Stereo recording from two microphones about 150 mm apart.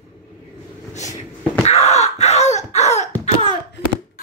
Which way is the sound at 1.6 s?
45° left (ahead or behind).